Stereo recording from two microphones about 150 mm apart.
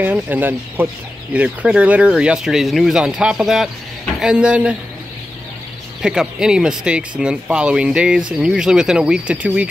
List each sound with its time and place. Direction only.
0.0 s speech: 10° right (ahead or behind)
6.0 s speech: 5° right (ahead or behind)